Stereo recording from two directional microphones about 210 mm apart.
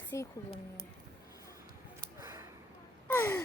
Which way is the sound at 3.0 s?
10° left (ahead or behind).